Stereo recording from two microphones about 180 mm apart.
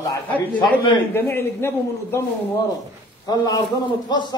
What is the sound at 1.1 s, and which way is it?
A man's voice, 10° left (ahead or behind).